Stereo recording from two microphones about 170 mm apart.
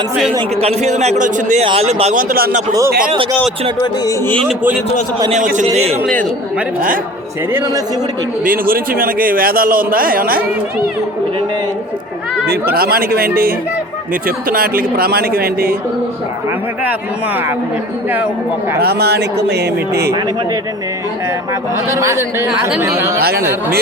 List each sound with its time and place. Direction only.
0.3 s a man's voice: 35° right (ahead or behind)
2.3 s a man's voice: 55° right (ahead or behind)
4.3 s speech: 5° left (ahead or behind)
5.3 s a man's voice: 45° right (ahead or behind)
8.4 s a man's voice: 60° right (ahead or behind)
12.7 s a man's voice: 60° right (ahead or behind)
18.8 s speech: 70° right (ahead or behind)
21.8 s speech: 15° right (ahead or behind)